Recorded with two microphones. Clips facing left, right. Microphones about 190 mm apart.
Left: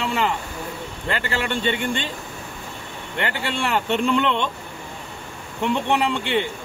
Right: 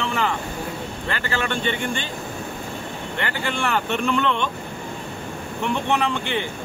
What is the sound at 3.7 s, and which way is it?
Speech, 25° left (ahead or behind).